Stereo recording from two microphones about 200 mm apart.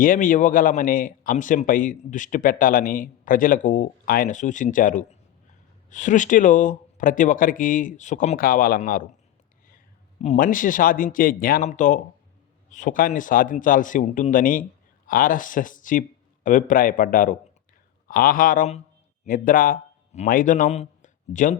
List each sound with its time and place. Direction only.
0.0 s a man's voice: 40° left (ahead or behind)
10.2 s a man's voice: 40° left (ahead or behind)